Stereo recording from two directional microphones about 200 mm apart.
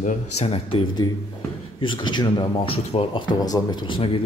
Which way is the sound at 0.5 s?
25° left (ahead or behind).